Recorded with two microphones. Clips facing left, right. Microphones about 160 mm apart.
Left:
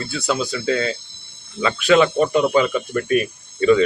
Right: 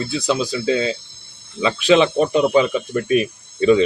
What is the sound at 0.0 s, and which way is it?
Speech, 15° right (ahead or behind).